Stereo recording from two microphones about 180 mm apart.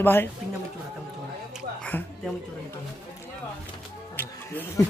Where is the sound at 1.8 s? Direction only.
5° left (ahead or behind).